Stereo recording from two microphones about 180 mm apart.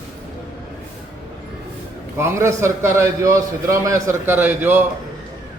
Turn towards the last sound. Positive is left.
turn(degrees=-10)  # may be behind; listen again after turning